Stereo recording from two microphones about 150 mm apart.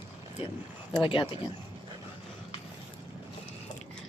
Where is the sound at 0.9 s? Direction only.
35° left (ahead or behind).